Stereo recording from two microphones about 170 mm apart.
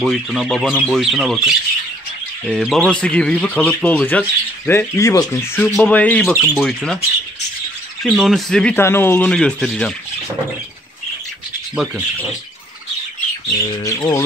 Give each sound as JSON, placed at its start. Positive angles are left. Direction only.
{"t": 0.0, "sound": "speech", "side_deg": 0}
{"t": 8.0, "sound": "speech", "side_deg": 0}
{"t": 11.7, "sound": "speech", "side_deg": -5}
{"t": 13.7, "sound": "bird", "side_deg": 25}